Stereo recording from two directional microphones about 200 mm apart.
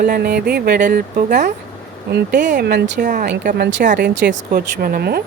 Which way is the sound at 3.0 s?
40° right (ahead or behind).